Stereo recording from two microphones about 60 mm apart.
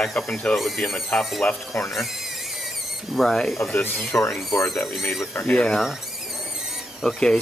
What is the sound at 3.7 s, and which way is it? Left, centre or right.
Speech, left.